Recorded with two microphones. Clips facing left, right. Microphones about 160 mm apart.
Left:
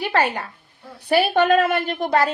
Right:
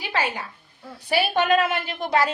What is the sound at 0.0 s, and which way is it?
A woman's voice, 60° left (ahead or behind).